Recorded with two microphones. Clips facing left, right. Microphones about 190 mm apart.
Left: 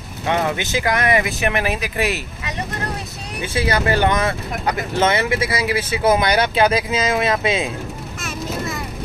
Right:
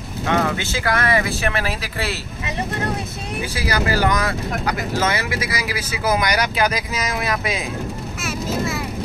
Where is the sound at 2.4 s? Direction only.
30° right (ahead or behind).